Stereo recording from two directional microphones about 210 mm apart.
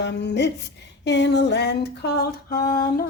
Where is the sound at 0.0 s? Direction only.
55° left (ahead or behind).